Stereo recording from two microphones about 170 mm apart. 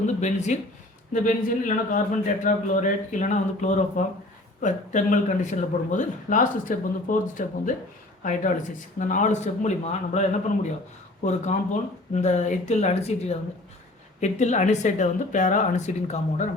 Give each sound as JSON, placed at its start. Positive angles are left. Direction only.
{"t": 0.2, "sound": "speech", "side_deg": 45}